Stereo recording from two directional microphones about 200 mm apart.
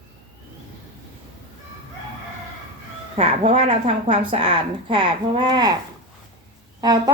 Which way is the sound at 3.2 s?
35° right (ahead or behind).